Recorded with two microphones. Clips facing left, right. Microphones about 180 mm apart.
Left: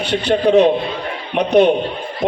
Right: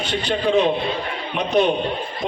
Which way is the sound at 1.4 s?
60° left (ahead or behind).